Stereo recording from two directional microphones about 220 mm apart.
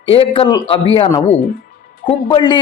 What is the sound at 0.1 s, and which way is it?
A man's voice, 25° left (ahead or behind).